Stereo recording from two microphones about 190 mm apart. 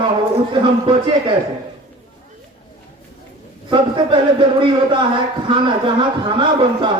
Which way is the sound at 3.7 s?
25° right (ahead or behind).